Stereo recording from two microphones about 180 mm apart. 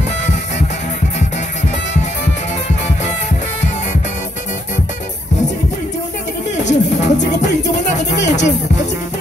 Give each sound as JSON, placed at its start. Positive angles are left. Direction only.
{"t": 6.6, "sound": "music", "side_deg": 40}
{"t": 7.4, "sound": "music", "side_deg": 70}
{"t": 8.2, "sound": "speech", "side_deg": 40}